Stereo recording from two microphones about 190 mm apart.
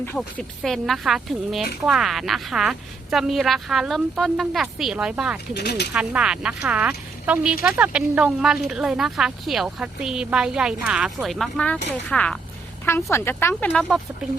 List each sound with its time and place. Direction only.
0.0 s speech: 5° left (ahead or behind)
5.5 s speech: 60° left (ahead or behind)
5.9 s speech: 5° right (ahead or behind)